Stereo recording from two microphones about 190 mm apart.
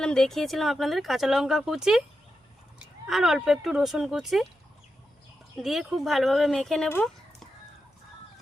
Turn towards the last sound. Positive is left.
turn(degrees=5)  # may be behind; listen again after turning